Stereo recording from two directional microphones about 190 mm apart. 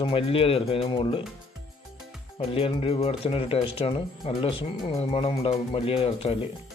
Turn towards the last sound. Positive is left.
turn(degrees=30)  # may be behind; listen again after turning